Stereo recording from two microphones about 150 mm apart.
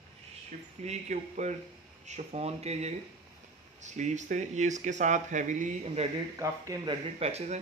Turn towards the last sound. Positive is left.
turn(degrees=-45)  # may be behind; listen again after turning